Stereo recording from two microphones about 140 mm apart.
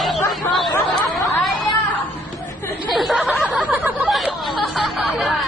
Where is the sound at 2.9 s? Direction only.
Centre (ahead or behind).